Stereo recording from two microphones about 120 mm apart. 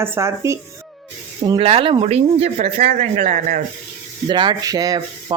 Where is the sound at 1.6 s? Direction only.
50° right (ahead or behind); by 3.4 s 80° right.